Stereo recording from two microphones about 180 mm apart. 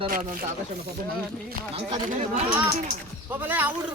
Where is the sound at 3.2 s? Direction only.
10° right (ahead or behind).